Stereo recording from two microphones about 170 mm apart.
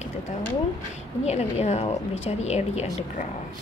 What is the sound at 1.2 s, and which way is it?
A woman's voice, 40° left (ahead or behind).